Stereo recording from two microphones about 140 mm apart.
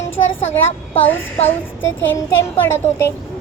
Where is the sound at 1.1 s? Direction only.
15° left (ahead or behind).